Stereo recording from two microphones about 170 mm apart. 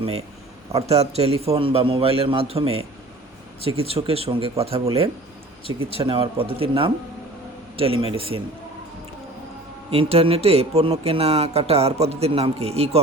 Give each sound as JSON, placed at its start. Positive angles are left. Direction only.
{"t": 0.7, "sound": "speech", "side_deg": -40}
{"t": 9.9, "sound": "speech", "side_deg": -35}